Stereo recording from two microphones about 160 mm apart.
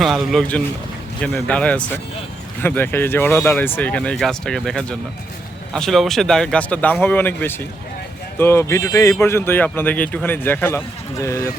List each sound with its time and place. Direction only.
0.0 s speech: centre (ahead or behind); by 11.5 s 20° left (ahead or behind)